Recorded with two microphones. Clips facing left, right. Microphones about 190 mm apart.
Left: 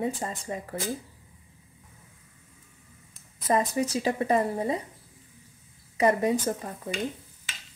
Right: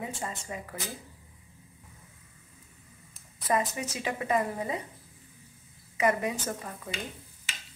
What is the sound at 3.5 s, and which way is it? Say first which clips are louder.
A woman's voice: left 4 dB; 35° left (ahead or behind).